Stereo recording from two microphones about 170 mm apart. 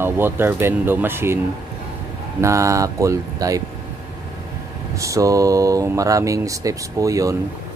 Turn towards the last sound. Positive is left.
turn(degrees=-20)  # may be behind; listen again after turning